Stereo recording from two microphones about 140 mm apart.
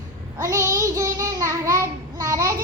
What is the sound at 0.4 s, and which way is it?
Child singing, 20° right (ahead or behind).